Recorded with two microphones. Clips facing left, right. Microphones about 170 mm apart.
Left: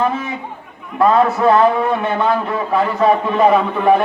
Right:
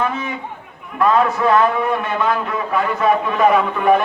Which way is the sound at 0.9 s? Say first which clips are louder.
Left 3 dB; 30° left (ahead or behind).